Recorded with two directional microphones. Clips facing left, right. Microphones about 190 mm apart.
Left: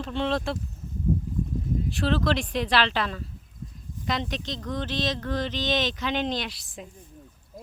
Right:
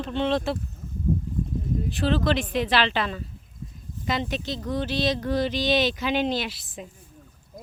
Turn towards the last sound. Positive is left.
turn(degrees=0)  # may be behind; listen again after turning